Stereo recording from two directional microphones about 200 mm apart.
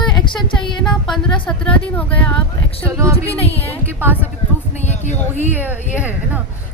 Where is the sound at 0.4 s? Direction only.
25° left (ahead or behind).